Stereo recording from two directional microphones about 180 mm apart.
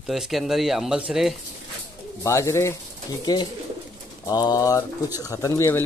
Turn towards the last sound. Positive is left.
turn(degrees=15)  # may be behind; listen again after turning